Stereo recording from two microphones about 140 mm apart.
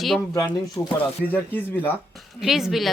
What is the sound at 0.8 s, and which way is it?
Speech, 30° left (ahead or behind).